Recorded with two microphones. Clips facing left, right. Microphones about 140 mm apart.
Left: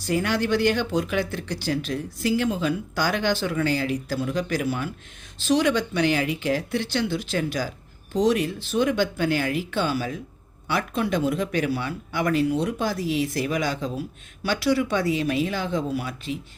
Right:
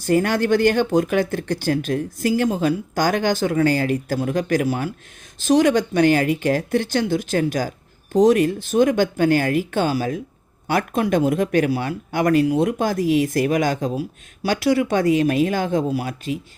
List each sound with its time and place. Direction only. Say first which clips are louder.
0.0 s speech: right 5 dB; 50° right (ahead or behind)